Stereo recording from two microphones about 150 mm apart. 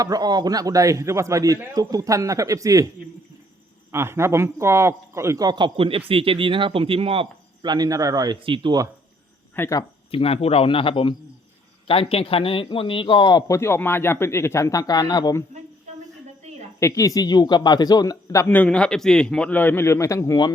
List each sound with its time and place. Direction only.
0.0 s a man's voice: 25° right (ahead or behind)
3.9 s a man's voice: 15° right (ahead or behind)
9.6 s a man's voice: 20° left (ahead or behind)
10.1 s speech: 40° left (ahead or behind)
13.5 s a man's voice: 15° left (ahead or behind)
16.8 s a man's voice: 20° left (ahead or behind)
18.4 s a man's voice: 10° left (ahead or behind)